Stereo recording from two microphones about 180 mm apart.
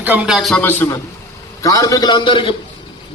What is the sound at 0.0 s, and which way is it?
Speech, 10° right (ahead or behind).